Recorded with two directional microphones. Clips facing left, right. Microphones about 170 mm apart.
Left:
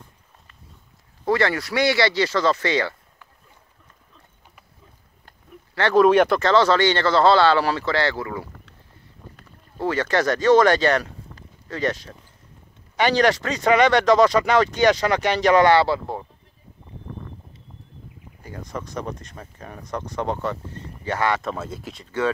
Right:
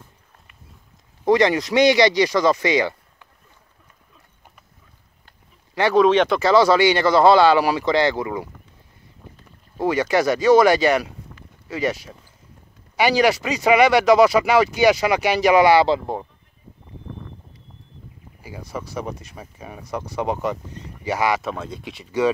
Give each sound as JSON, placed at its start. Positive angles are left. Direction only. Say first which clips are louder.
{"t": 1.2, "sound": "speech", "louder": "right 5 dB", "side_deg": -15}
{"t": 5.9, "sound": "speech", "louder": "left 1 dB", "side_deg": 5}
{"t": 6.4, "sound": "speech", "louder": "right 2 dB", "side_deg": -10}
{"t": 9.8, "sound": "speech", "louder": "right 3 dB", "side_deg": -15}
{"t": 18.4, "sound": "speech", "louder": "right 1 dB", "side_deg": -10}
{"t": 21.5, "sound": "speech", "louder": "even", "side_deg": 5}
{"t": 22.0, "sound": "speech", "louder": "right 4 dB", "side_deg": -15}